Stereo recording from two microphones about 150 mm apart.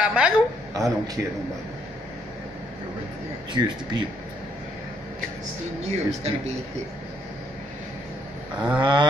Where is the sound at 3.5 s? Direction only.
30° right (ahead or behind).